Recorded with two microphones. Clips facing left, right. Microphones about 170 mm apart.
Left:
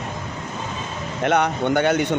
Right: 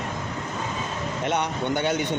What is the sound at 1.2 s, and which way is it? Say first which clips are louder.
Speech: left 7 dB; 65° left (ahead or behind).